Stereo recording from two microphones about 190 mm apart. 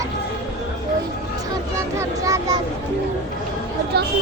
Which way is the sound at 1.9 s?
15° right (ahead or behind).